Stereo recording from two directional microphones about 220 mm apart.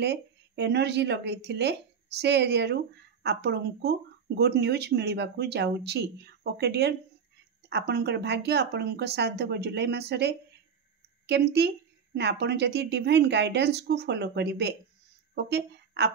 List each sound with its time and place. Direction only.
0.0 s speech: 50° right (ahead or behind)